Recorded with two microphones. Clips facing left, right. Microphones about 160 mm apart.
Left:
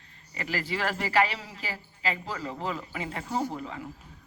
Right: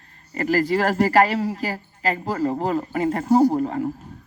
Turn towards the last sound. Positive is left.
turn(degrees=-50)  # may be behind; listen again after turning